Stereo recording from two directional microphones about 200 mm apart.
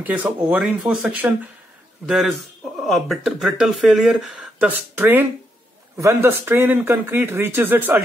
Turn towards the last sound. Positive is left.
turn(degrees=-10)  # may be behind; listen again after turning